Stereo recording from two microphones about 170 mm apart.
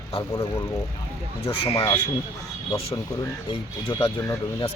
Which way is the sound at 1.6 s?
30° left (ahead or behind).